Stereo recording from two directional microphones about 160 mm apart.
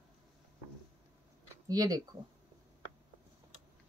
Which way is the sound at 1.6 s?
25° right (ahead or behind).